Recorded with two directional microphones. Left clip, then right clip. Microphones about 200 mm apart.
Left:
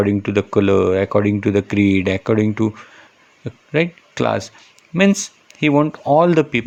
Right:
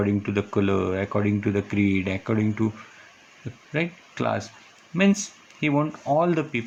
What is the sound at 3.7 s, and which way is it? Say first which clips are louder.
Speech: left 9 dB; 50° left (ahead or behind).